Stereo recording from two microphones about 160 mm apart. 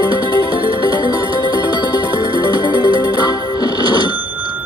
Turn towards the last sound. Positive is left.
turn(degrees=25)  # may be behind; listen again after turning